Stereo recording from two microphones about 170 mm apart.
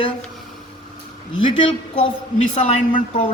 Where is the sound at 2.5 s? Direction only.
45° left (ahead or behind).